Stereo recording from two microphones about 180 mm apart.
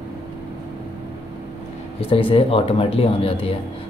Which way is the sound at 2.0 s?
30° left (ahead or behind).